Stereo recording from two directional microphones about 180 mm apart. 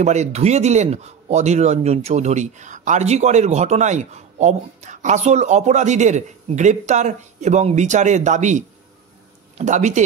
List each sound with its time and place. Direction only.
0.0 s speech: 40° right (ahead or behind)